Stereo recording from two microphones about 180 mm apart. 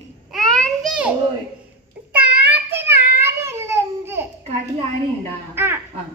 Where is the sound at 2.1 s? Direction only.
10° right (ahead or behind).